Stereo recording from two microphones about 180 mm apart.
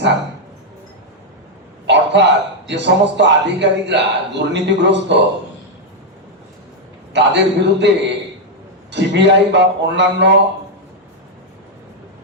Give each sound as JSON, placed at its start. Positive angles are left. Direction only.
{"t": 1.9, "sound": "a man's voice", "side_deg": -75}
{"t": 7.1, "sound": "a man's voice", "side_deg": -75}